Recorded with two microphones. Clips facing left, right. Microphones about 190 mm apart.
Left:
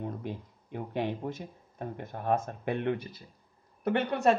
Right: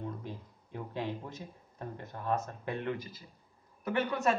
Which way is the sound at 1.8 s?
60° left (ahead or behind).